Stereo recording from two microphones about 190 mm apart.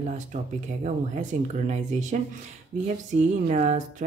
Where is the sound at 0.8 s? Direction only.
40° right (ahead or behind).